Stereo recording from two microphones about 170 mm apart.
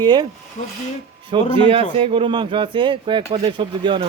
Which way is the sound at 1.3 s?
30° right (ahead or behind).